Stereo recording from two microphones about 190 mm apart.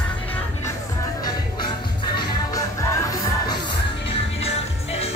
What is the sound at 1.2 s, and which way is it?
Music, 20° left (ahead or behind).